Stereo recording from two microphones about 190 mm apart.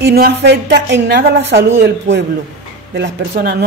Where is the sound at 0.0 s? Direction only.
55° right (ahead or behind).